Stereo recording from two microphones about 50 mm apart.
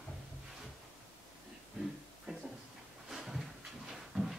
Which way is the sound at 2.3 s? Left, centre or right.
Centre.